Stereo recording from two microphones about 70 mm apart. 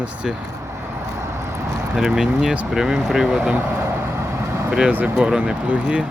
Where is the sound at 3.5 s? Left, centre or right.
Right.